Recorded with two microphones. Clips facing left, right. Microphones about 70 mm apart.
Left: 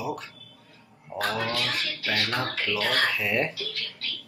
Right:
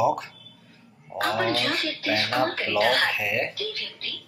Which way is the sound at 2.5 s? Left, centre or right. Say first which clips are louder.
Right 1 dB; right.